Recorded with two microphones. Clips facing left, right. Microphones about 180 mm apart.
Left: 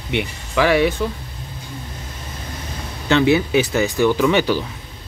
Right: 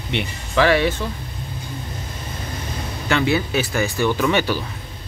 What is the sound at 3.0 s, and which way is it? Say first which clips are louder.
Speech: left 4 dB; 20° left (ahead or behind).